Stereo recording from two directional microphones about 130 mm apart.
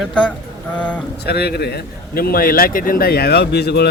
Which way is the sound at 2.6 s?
90° left.